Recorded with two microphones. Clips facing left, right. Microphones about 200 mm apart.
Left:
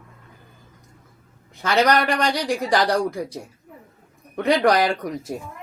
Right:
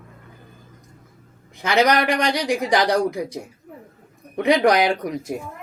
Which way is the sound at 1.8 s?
20° right (ahead or behind).